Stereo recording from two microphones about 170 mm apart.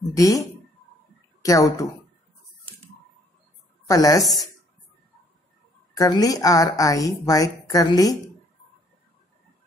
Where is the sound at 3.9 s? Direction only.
20° left (ahead or behind).